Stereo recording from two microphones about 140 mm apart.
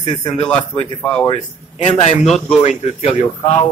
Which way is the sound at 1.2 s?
35° left (ahead or behind).